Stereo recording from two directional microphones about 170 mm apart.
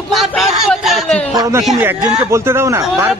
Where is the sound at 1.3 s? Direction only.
20° right (ahead or behind).